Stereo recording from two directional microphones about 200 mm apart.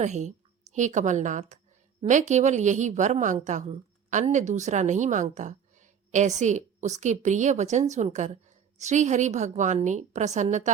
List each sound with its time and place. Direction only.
0.0 s a woman's voice: 35° right (ahead or behind)